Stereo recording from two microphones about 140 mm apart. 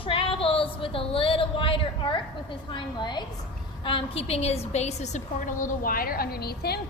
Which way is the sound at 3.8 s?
40° left (ahead or behind).